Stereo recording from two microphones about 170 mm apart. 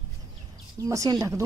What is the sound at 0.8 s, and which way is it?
Speech, 20° right (ahead or behind).